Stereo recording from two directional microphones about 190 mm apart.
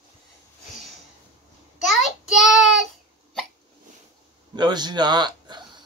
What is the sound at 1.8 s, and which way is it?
Child singing, centre (ahead or behind).